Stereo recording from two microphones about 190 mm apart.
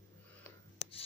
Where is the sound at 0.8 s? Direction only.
30° left (ahead or behind).